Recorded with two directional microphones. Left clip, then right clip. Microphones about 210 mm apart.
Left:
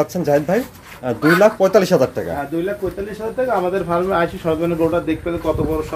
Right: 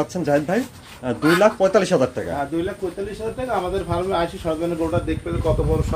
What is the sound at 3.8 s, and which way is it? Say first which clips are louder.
Speech: left 4 dB; 30° left (ahead or behind).